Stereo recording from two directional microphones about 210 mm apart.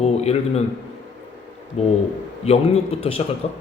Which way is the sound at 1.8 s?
30° left (ahead or behind).